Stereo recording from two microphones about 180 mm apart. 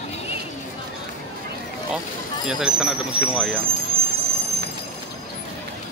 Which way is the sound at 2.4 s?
5° right (ahead or behind).